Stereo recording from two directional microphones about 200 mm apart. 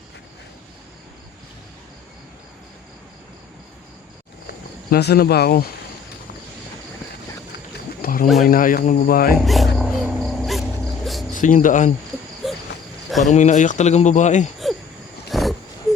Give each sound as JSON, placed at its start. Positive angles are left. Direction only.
{"t": 4.9, "sound": "speech", "side_deg": 55}
{"t": 8.0, "sound": "bird", "side_deg": 45}
{"t": 8.4, "sound": "speech", "side_deg": 45}
{"t": 9.3, "sound": "wild animals", "side_deg": 0}
{"t": 11.3, "sound": "speech", "side_deg": 40}
{"t": 13.2, "sound": "speech", "side_deg": 35}
{"t": 14.6, "sound": "cricket", "side_deg": 0}
{"t": 15.3, "sound": "wild animals", "side_deg": 0}